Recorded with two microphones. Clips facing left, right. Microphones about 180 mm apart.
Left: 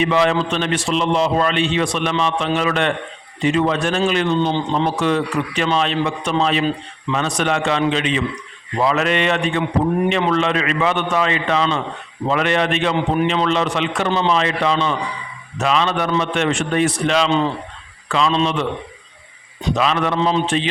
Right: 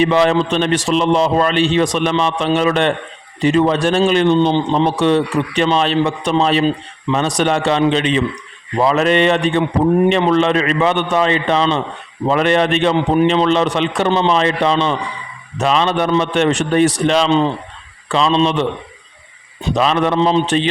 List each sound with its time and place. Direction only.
0.0 s a man's voice: 35° right (ahead or behind)
14.1 s a man's voice: 20° right (ahead or behind)
17.2 s a man's voice: 25° right (ahead or behind)
19.7 s a man's voice: 35° right (ahead or behind)